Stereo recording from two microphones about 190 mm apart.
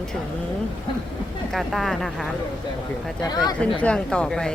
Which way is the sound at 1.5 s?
Centre (ahead or behind).